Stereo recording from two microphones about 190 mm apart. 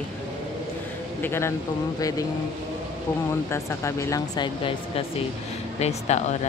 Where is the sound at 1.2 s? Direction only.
10° left (ahead or behind).